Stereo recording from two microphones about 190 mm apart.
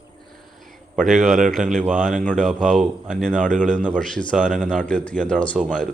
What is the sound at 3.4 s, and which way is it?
Speech, 40° right (ahead or behind).